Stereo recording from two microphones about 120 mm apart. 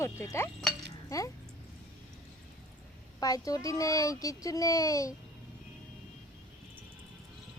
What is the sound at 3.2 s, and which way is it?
A child's voice, 30° left (ahead or behind).